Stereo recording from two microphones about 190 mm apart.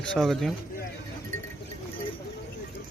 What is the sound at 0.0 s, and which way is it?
Speech, 5° left (ahead or behind).